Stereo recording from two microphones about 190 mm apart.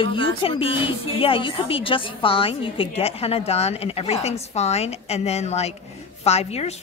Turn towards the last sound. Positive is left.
turn(degrees=35)  # may be behind; listen again after turning